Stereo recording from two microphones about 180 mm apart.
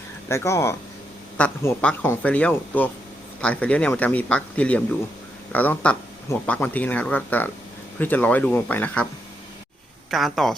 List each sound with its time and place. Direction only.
0.3 s speech: 15° left (ahead or behind)
10.1 s speech: centre (ahead or behind)